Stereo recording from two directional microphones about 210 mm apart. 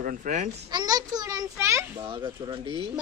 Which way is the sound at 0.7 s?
20° right (ahead or behind).